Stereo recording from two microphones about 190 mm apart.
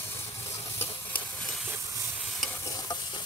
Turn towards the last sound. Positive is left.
turn(degrees=20)  # may be behind; listen again after turning